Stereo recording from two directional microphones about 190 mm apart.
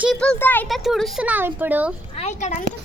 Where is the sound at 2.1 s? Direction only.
35° left (ahead or behind).